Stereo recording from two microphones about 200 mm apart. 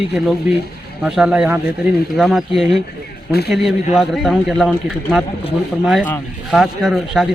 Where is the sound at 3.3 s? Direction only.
50° left (ahead or behind).